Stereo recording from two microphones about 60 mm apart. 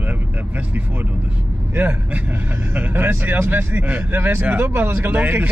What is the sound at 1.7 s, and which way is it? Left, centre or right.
Speech, right.